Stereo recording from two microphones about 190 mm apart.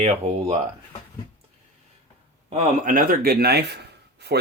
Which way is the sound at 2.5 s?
40° right (ahead or behind).